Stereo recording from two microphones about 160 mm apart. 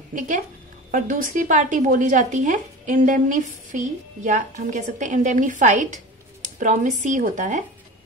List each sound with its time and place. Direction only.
0.9 s a woman's voice: 55° right (ahead or behind)